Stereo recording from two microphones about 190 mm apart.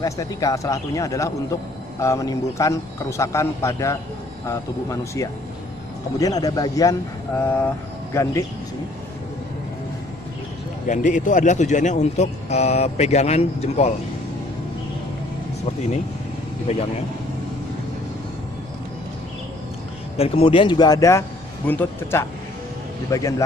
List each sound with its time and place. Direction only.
0.0 s a man's voice: 20° left (ahead or behind)
10.9 s speech: 40° left (ahead or behind)
20.2 s a man's voice: 30° left (ahead or behind); by 23.3 s 15° left (ahead or behind)